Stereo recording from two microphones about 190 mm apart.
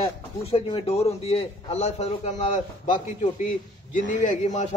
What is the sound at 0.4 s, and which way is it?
A man's voice, 30° left (ahead or behind).